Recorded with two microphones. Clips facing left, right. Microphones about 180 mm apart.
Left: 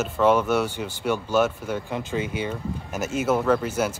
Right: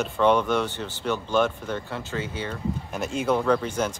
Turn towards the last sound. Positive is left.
turn(degrees=5)  # may be behind; listen again after turning